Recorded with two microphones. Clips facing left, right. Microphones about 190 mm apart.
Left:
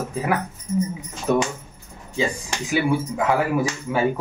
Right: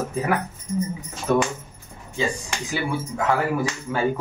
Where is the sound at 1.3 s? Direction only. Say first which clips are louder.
Even; 10° left (ahead or behind).